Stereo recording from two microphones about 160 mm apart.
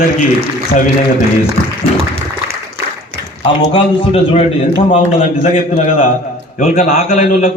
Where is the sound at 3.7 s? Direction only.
35° left (ahead or behind).